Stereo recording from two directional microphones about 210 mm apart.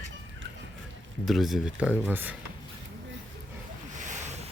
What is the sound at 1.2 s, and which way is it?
Speech, centre (ahead or behind).